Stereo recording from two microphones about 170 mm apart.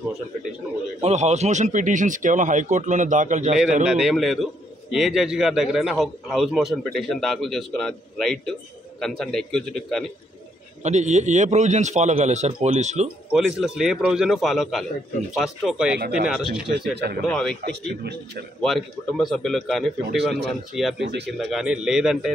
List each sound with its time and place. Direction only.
1.0 s speech: 40° right (ahead or behind)
3.8 s a man's voice: 5° right (ahead or behind)
10.8 s speech: 40° right (ahead or behind)
13.3 s a man's voice: 5° right (ahead or behind)
16.9 s a man's voice: 70° right (ahead or behind)
17.3 s a man's voice: 5° left (ahead or behind)
18.0 s a man's voice: 75° right (ahead or behind)
18.6 s a man's voice: centre (ahead or behind)
21.0 s speech: 90° right
21.3 s a man's voice: centre (ahead or behind)